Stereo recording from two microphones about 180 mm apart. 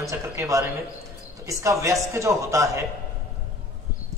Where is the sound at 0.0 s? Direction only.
15° right (ahead or behind).